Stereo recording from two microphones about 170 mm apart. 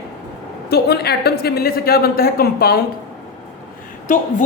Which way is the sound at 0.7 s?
70° left (ahead or behind).